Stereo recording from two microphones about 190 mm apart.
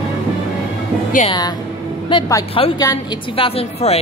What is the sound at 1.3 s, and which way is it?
A woman's voice, 20° left (ahead or behind).